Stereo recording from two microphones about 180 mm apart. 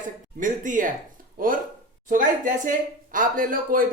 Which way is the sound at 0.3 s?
45° right (ahead or behind).